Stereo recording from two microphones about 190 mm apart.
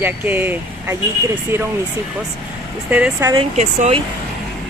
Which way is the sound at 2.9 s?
10° right (ahead or behind).